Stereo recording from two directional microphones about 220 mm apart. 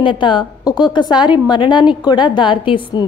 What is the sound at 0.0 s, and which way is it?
A woman's voice, 20° left (ahead or behind).